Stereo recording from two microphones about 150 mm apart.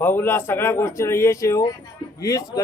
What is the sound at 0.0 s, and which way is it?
A man's voice, 15° left (ahead or behind).